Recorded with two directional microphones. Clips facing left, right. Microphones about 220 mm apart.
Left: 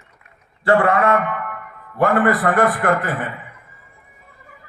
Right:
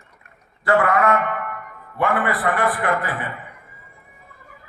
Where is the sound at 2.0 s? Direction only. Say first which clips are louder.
Left 5 dB; 45° left (ahead or behind).